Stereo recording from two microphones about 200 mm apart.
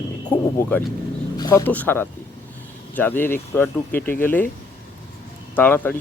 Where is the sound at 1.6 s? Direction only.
10° left (ahead or behind).